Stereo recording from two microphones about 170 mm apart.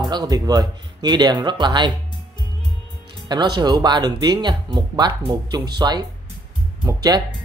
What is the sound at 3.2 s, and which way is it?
Speech, 25° right (ahead or behind).